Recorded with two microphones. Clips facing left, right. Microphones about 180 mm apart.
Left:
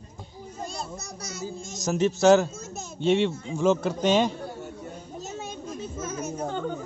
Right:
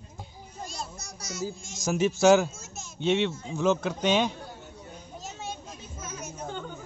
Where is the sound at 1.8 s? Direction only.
5° right (ahead or behind).